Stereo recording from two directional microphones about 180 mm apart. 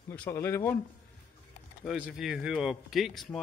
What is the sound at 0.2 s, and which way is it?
Speech, 15° left (ahead or behind).